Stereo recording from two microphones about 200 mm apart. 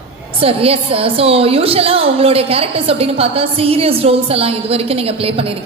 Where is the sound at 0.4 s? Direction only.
30° right (ahead or behind).